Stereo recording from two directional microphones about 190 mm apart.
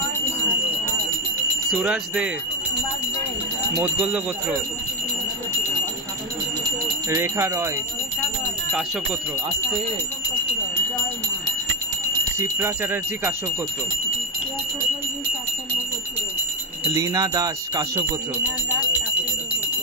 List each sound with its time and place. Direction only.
1.8 s speech: 5° right (ahead or behind)
3.7 s speech: 5° right (ahead or behind)
7.1 s speech: 15° right (ahead or behind)
12.4 s speech: 15° right (ahead or behind)
16.9 s speech: 20° right (ahead or behind)